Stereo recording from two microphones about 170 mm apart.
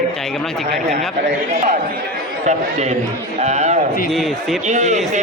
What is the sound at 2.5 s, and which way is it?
Speech, 40° right (ahead or behind).